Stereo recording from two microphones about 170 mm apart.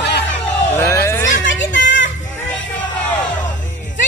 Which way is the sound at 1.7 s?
50° left (ahead or behind).